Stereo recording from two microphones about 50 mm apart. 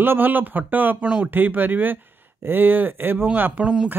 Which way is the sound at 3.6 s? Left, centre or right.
Right.